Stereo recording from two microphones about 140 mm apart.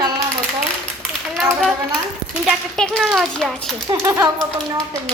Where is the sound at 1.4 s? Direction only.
Centre (ahead or behind).